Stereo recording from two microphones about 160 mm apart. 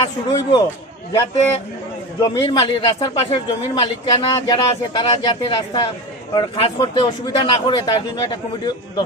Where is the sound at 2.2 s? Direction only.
30° left (ahead or behind).